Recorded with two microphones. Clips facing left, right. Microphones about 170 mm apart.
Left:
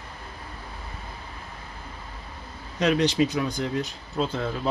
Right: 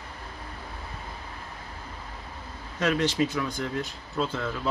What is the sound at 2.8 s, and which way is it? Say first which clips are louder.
Speech: left 3 dB; 20° left (ahead or behind).